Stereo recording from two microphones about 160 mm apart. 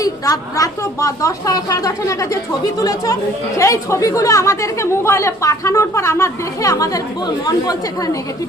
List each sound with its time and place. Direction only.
0.0 s speech: 20° left (ahead or behind)